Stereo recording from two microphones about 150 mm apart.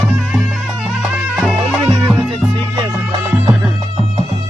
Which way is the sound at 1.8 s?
25° right (ahead or behind).